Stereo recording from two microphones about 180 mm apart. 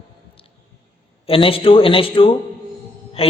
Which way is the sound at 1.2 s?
30° left (ahead or behind).